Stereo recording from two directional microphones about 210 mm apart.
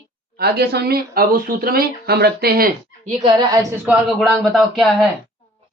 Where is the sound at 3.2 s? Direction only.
20° right (ahead or behind).